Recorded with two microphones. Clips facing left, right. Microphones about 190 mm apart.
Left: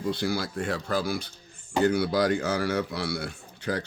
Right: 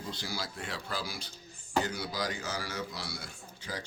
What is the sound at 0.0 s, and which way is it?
Speech, 60° left (ahead or behind).